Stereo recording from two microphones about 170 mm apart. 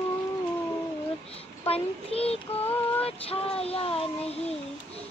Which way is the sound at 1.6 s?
35° left (ahead or behind).